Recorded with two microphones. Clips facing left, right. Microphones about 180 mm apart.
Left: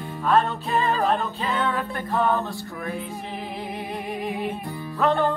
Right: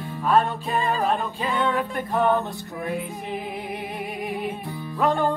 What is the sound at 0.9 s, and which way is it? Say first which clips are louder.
Music: left 1 dB; 10° right (ahead or behind).